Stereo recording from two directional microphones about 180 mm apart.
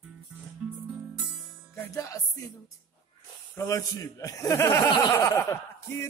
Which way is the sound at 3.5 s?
15° left (ahead or behind).